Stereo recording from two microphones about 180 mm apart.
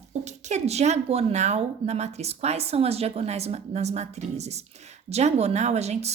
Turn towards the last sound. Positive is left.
turn(degrees=-35)  # may be behind; listen again after turning